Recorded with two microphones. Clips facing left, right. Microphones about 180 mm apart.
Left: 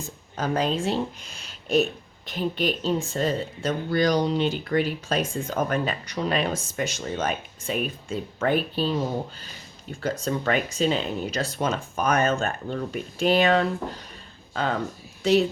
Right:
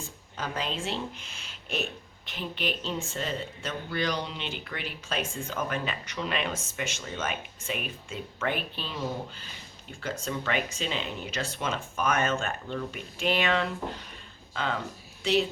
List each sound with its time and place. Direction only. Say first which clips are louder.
0.3 s speech: left 9 dB; 40° left (ahead or behind)